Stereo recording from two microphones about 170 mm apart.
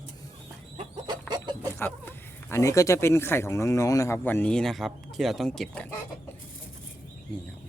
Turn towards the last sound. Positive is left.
turn(degrees=5)  # may be behind; listen again after turning